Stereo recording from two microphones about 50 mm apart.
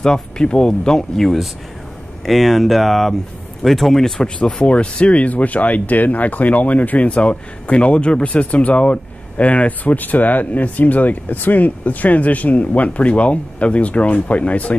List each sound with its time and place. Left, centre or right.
0.0 s speech: centre
4.4 s speech: left